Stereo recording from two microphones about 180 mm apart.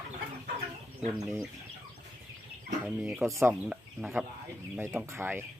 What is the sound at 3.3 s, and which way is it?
Speech, 15° right (ahead or behind).